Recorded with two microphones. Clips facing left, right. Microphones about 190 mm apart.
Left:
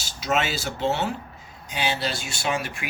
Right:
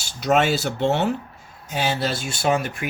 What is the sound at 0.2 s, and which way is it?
Speech, 50° right (ahead or behind).